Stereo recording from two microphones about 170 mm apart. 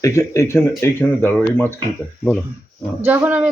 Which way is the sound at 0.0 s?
15° left (ahead or behind).